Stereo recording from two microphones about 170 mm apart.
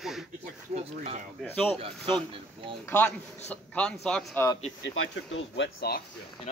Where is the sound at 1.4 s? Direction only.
10° left (ahead or behind).